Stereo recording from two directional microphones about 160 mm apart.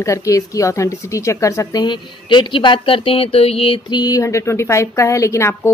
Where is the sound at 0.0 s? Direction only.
20° left (ahead or behind).